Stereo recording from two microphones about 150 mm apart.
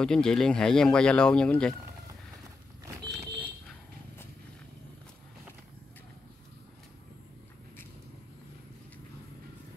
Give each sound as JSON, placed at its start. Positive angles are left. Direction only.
{"t": 0.0, "sound": "speech", "side_deg": 5}